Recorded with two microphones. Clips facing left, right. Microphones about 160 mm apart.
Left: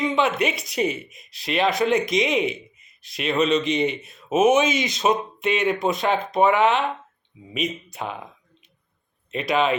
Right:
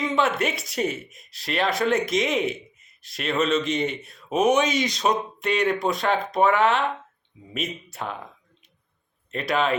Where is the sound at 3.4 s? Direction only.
20° left (ahead or behind).